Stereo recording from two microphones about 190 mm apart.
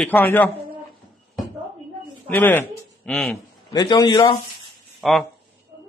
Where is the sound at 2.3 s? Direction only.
10° left (ahead or behind).